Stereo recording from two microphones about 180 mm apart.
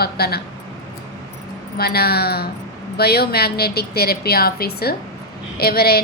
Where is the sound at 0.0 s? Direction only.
60° left (ahead or behind).